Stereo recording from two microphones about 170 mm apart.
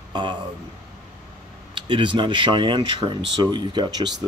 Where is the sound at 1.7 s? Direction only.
30° right (ahead or behind).